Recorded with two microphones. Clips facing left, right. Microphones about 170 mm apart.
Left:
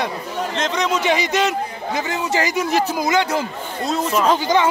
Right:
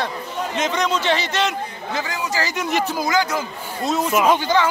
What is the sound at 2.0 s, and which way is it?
Speech, 25° left (ahead or behind).